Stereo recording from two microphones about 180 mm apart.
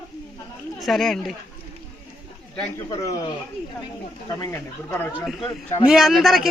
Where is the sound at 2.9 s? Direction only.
20° left (ahead or behind).